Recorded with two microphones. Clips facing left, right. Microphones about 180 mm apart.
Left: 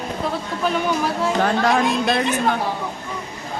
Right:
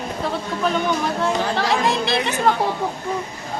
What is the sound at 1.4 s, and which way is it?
Speech, 60° left (ahead or behind).